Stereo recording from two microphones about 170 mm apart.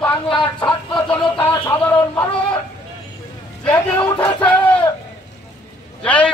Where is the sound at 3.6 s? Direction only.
10° left (ahead or behind).